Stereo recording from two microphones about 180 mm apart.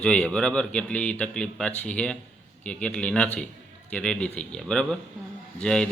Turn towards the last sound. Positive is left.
turn(degrees=5)  # may be behind; listen again after turning